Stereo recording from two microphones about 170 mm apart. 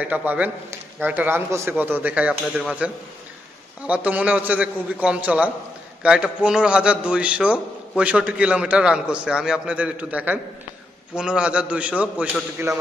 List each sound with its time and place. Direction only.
0.0 s a man's voice: 10° right (ahead or behind)